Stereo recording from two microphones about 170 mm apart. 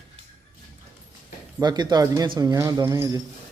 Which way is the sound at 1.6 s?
25° right (ahead or behind).